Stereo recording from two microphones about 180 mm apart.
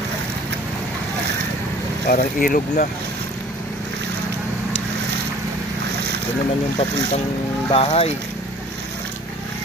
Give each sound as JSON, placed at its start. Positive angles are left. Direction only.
{"t": 2.0, "sound": "speech", "side_deg": 50}
{"t": 7.7, "sound": "speech", "side_deg": 30}